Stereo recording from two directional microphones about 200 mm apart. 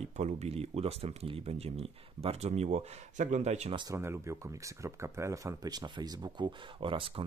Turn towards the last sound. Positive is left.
turn(degrees=-25)  # may be behind; listen again after turning